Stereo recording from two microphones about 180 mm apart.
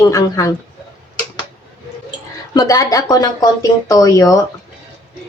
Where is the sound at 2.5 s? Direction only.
20° left (ahead or behind).